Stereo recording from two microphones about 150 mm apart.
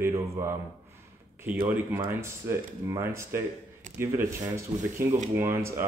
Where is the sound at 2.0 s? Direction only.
20° right (ahead or behind).